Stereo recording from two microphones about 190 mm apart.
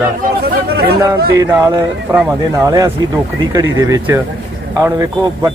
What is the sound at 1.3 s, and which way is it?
A man's voice, 10° right (ahead or behind).